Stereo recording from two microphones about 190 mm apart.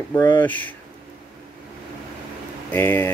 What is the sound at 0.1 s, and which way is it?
Speech, 10° left (ahead or behind).